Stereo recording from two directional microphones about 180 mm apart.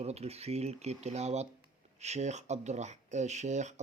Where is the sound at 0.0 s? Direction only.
35° right (ahead or behind).